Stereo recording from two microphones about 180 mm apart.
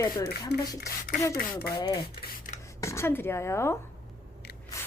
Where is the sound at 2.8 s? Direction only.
15° left (ahead or behind).